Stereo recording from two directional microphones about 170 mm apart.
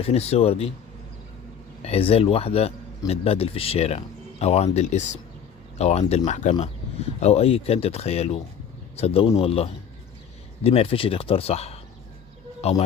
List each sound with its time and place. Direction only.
0.0 s speech: 35° left (ahead or behind)
1.8 s speech: 35° left (ahead or behind)